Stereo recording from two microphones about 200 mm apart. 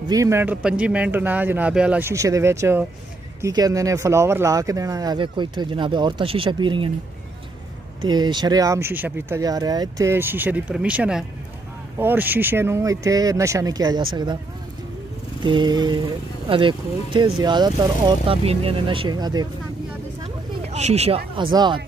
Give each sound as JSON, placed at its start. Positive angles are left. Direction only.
{"t": 0.1, "sound": "speech", "side_deg": -15}
{"t": 8.0, "sound": "speech", "side_deg": -20}
{"t": 15.4, "sound": "speech", "side_deg": -25}
{"t": 20.7, "sound": "speech", "side_deg": -35}